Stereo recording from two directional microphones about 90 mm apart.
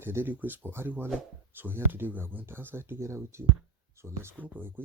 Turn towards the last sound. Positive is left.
turn(degrees=-20)  # may be behind; listen again after turning